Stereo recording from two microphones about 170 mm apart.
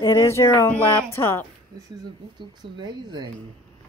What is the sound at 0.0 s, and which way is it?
Speech, 15° left (ahead or behind).